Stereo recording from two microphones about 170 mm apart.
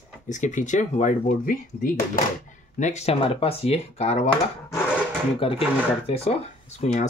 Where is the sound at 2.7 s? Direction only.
45° left (ahead or behind).